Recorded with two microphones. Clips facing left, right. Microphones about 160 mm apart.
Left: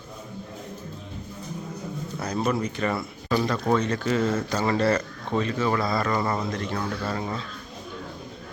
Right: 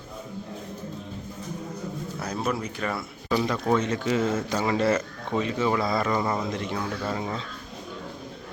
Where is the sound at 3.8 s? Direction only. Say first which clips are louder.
Left 1 dB; 15° right (ahead or behind).